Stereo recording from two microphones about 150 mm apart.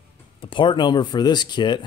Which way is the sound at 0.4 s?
35° left (ahead or behind).